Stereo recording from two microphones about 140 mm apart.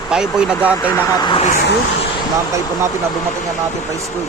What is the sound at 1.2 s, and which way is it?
Speech, 35° left (ahead or behind).